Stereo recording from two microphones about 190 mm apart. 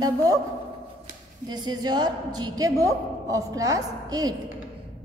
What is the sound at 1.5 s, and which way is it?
A woman's voice, 20° right (ahead or behind).